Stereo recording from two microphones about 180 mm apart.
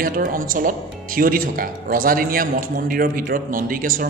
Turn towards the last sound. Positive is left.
turn(degrees=-50)  # may be behind; listen again after turning